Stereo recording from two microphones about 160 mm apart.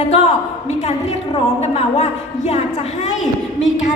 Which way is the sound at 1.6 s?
45° left (ahead or behind).